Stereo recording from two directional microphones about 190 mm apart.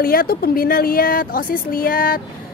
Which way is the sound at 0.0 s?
50° left (ahead or behind).